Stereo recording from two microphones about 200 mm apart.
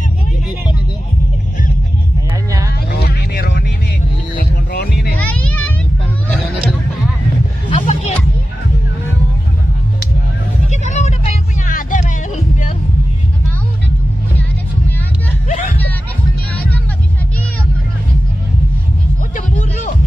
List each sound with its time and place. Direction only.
2.9 s vehicle: 50° left (ahead or behind)
4.4 s music: 50° left (ahead or behind)
5.2 s music: 5° left (ahead or behind)
7.7 s hubbub: 35° left (ahead or behind)
10.7 s music: 35° left (ahead or behind)
15.4 s music: 40° left (ahead or behind)